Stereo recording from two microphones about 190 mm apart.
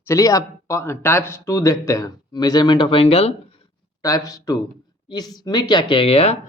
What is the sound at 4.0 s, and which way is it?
Speech, 15° left (ahead or behind).